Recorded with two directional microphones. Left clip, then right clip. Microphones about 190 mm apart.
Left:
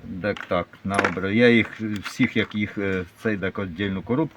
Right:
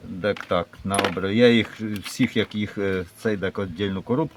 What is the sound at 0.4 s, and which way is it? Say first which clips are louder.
Speech: right 1 dB; 5° right (ahead or behind).